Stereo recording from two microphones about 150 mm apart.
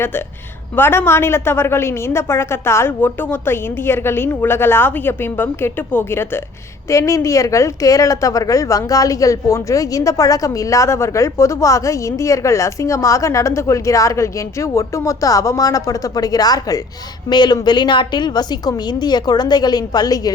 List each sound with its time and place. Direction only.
0.8 s a woman's voice: 15° left (ahead or behind)